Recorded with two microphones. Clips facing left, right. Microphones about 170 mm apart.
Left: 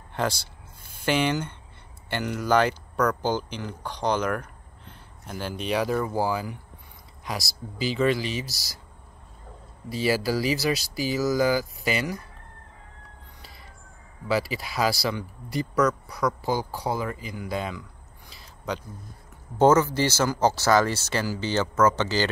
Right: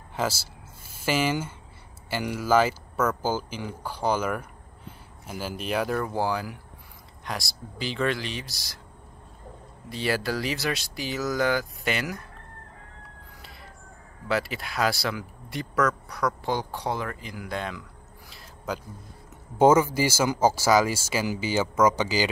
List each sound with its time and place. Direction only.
0.1 s speech: 5° right (ahead or behind)
9.8 s speech: 5° left (ahead or behind)
14.2 s speech: centre (ahead or behind)
18.3 s a sound: centre (ahead or behind)
19.6 s speech: 10° right (ahead or behind)